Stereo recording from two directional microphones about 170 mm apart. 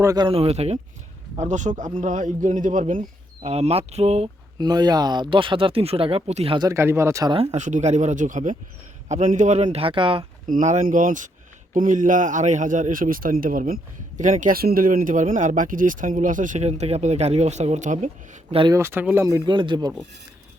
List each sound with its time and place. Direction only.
0.0 s speech: 20° right (ahead or behind)
0.3 s speech: 35° right (ahead or behind)
3.4 s speech: 40° right (ahead or behind)
4.5 s speech: 25° right (ahead or behind)
6.7 s speech: 15° right (ahead or behind)
7.3 s speech: 40° right (ahead or behind)
10.4 s speech: 45° right (ahead or behind)
18.7 s speech: 15° right (ahead or behind)